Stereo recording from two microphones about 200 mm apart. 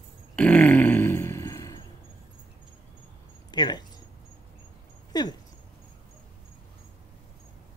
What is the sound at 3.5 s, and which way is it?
Speech, 20° left (ahead or behind).